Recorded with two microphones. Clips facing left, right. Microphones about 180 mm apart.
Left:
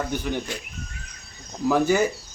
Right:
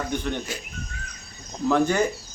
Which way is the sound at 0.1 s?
5° left (ahead or behind).